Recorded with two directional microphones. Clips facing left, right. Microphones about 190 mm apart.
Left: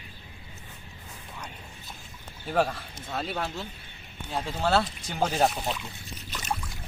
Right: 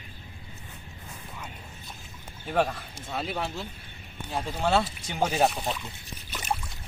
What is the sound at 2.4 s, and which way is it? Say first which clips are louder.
Speech: even; 5° left (ahead or behind).